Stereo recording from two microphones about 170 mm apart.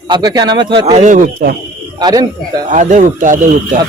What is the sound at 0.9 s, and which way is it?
Speech, 45° right (ahead or behind).